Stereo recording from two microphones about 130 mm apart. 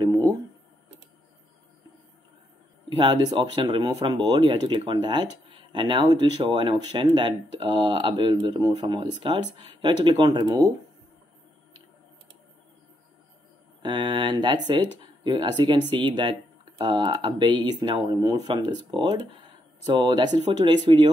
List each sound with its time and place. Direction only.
0.0 s a sound: 30° right (ahead or behind)
2.9 s speech: 40° right (ahead or behind)
13.8 s speech: 35° right (ahead or behind)